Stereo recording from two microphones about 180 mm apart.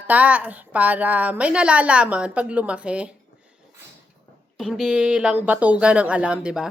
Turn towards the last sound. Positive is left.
turn(degrees=-5)  # may be behind; listen again after turning